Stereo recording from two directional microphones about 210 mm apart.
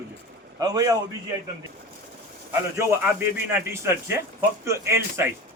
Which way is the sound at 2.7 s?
15° right (ahead or behind).